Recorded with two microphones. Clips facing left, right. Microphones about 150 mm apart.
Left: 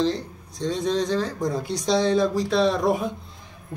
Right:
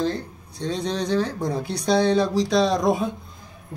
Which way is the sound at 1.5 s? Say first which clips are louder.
Right 1 dB; 65° right (ahead or behind).